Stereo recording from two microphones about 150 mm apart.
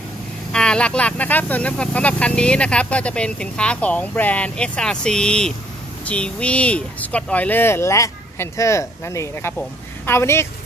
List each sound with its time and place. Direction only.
0.5 s speech: 5° left (ahead or behind)